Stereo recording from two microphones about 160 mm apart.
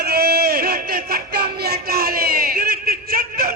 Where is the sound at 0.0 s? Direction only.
80° right.